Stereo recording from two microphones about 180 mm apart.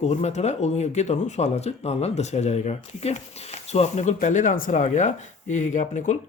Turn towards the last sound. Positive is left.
turn(degrees=45)  # may be behind; listen again after turning